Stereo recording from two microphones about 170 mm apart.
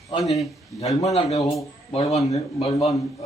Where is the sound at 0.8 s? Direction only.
40° left (ahead or behind).